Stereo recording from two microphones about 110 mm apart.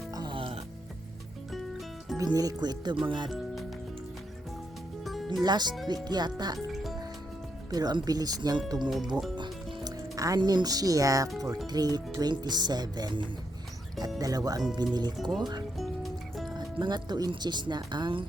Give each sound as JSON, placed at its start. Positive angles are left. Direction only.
{"t": 0.1, "sound": "music", "side_deg": -35}
{"t": 0.3, "sound": "music", "side_deg": -60}
{"t": 2.1, "sound": "speech", "side_deg": -35}
{"t": 5.0, "sound": "music", "side_deg": 0}
{"t": 5.4, "sound": "speech", "side_deg": -40}
{"t": 6.7, "sound": "music", "side_deg": 0}
{"t": 7.7, "sound": "speech", "side_deg": -35}
{"t": 9.3, "sound": "music", "side_deg": -40}
{"t": 11.3, "sound": "speech", "side_deg": -30}
{"t": 15.8, "sound": "music", "side_deg": 0}
{"t": 16.8, "sound": "speech", "side_deg": -40}